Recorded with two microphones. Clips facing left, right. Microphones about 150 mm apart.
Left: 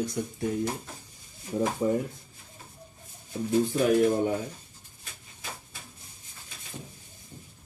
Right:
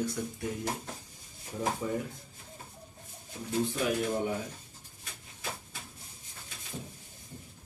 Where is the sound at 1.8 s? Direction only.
35° left (ahead or behind).